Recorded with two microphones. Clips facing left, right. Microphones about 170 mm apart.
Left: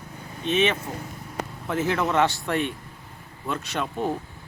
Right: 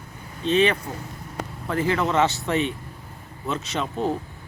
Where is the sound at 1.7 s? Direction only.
5° left (ahead or behind).